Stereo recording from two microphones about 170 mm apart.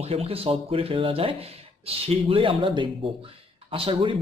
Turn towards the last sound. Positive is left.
turn(degrees=-30)  # may be behind; listen again after turning